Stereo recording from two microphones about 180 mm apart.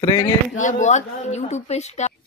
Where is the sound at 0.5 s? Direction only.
45° left (ahead or behind).